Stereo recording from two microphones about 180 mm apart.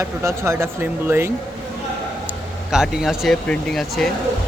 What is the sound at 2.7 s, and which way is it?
Speech, 5° right (ahead or behind).